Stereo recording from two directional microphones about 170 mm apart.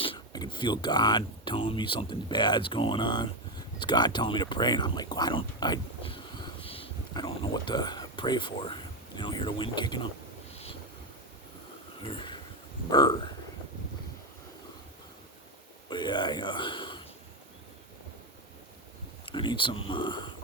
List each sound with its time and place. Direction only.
0.0 s speech: 30° left (ahead or behind)
12.0 s speech: 30° left (ahead or behind)
15.9 s a man's voice: 25° left (ahead or behind)
19.2 s speech: 30° left (ahead or behind)